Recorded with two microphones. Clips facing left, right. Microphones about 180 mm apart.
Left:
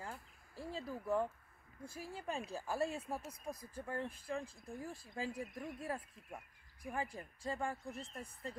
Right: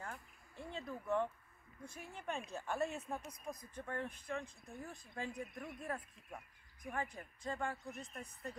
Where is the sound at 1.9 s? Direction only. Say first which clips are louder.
Left 1 dB; 35° left (ahead or behind).